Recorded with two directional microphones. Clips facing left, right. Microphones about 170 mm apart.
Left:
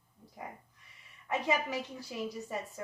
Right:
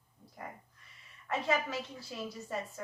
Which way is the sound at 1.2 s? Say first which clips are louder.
Left 1 dB; 15° left (ahead or behind).